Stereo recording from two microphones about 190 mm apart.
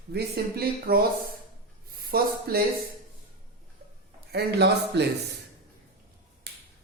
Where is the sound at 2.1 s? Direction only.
50° right (ahead or behind).